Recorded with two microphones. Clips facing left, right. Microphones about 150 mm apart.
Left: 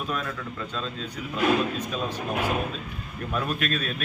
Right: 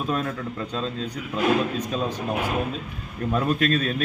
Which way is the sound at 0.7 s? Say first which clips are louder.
Right 5 dB; 35° right (ahead or behind).